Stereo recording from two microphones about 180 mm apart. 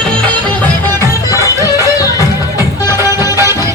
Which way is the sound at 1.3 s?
20° left (ahead or behind).